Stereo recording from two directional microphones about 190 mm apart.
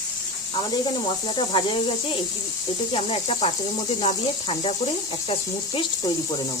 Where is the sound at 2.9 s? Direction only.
30° left (ahead or behind).